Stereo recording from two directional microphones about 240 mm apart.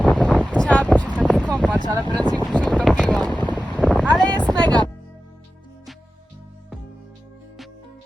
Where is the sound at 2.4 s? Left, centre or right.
Centre.